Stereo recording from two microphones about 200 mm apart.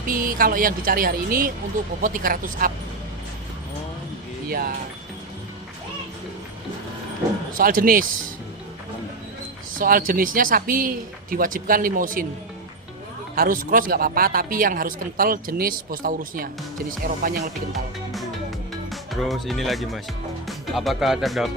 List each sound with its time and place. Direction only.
0.1 s speech: 45° right (ahead or behind)
4.4 s speech: 50° right (ahead or behind)
7.5 s speech: 45° right (ahead or behind)
9.7 s speech: 45° right (ahead or behind)
13.3 s speech: 45° right (ahead or behind)
17.7 s music: centre (ahead or behind)
18.9 s speech: centre (ahead or behind)